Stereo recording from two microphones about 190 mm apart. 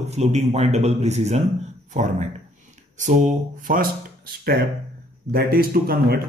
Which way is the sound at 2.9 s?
40° right (ahead or behind).